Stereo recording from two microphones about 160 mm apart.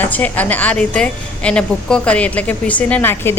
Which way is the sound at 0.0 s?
10° left (ahead or behind).